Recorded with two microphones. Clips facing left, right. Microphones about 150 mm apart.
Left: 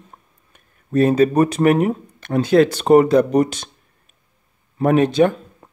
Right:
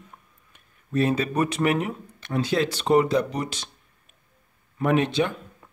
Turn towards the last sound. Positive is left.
turn(degrees=45)  # may be behind; listen again after turning